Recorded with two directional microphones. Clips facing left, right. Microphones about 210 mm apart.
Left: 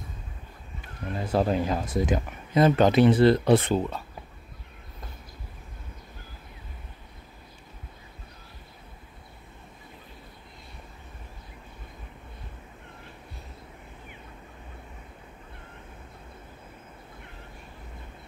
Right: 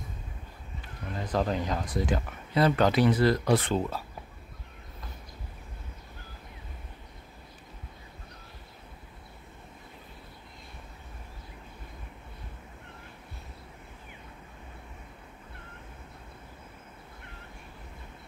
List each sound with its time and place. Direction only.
1.1 s speech: 10° left (ahead or behind)
1.7 s speech: 25° left (ahead or behind)
3.7 s speech: centre (ahead or behind)